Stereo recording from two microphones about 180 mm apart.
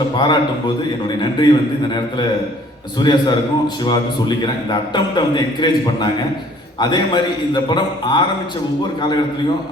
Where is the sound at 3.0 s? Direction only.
25° left (ahead or behind).